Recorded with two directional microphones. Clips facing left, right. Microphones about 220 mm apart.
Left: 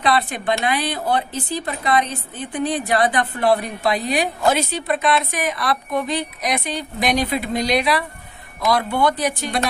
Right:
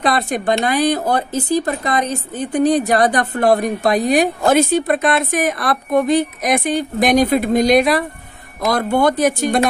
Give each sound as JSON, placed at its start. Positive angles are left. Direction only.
{"t": 0.0, "sound": "a woman's voice", "side_deg": -45}